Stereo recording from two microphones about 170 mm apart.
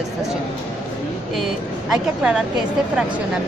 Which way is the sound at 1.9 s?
5° right (ahead or behind).